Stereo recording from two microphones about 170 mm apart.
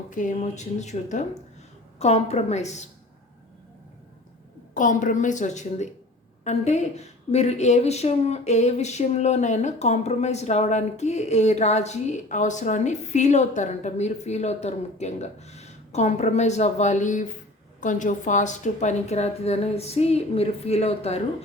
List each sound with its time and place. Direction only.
0.1 s a woman's voice: 45° left (ahead or behind)
4.7 s a woman's voice: 50° left (ahead or behind)